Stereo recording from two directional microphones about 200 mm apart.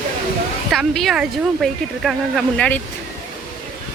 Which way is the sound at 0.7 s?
Centre (ahead or behind).